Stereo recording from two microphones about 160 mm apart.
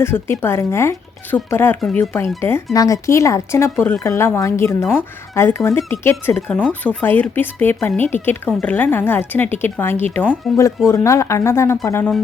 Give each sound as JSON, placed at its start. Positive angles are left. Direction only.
{"t": 0.0, "sound": "speech", "side_deg": 15}